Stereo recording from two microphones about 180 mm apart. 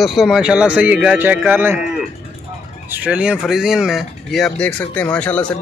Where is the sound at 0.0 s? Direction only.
Centre (ahead or behind).